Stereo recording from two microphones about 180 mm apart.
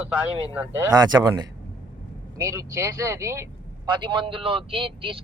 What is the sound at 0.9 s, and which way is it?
A man's voice, 20° right (ahead or behind).